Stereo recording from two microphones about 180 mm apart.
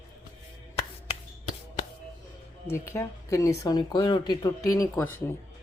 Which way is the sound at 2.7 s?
15° left (ahead or behind).